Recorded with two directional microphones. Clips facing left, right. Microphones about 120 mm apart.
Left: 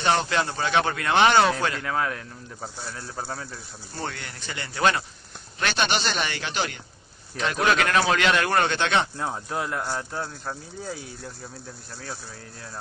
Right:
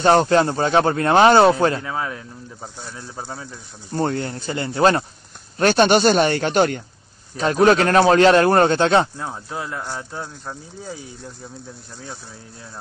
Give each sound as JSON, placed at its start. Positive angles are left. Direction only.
{"t": 0.0, "sound": "speech", "side_deg": -40}
{"t": 1.8, "sound": "speech", "side_deg": -10}
{"t": 3.9, "sound": "speech", "side_deg": -40}
{"t": 5.6, "sound": "speech", "side_deg": -45}
{"t": 9.2, "sound": "speech", "side_deg": 0}